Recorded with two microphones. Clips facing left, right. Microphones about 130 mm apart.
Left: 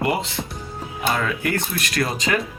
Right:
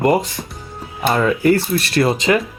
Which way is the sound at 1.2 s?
30° right (ahead or behind).